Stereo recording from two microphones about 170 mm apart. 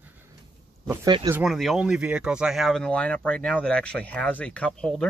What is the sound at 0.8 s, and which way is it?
Speech, 15° right (ahead or behind).